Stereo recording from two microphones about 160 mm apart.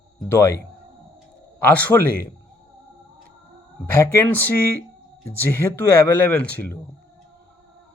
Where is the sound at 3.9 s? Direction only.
15° left (ahead or behind).